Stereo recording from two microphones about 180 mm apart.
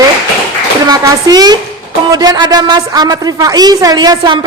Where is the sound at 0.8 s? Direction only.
20° right (ahead or behind).